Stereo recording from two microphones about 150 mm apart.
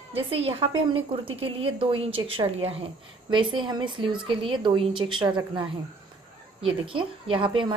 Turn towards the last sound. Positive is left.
turn(degrees=-30)  # may be behind; listen again after turning